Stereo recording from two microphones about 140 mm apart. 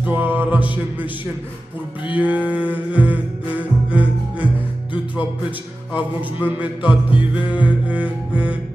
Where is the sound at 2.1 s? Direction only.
10° right (ahead or behind).